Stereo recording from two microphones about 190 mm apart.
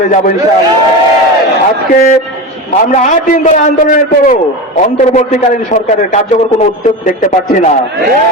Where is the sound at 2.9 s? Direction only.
40° left (ahead or behind).